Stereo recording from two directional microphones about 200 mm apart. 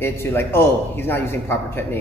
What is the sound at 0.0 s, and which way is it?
A man's voice, 10° left (ahead or behind).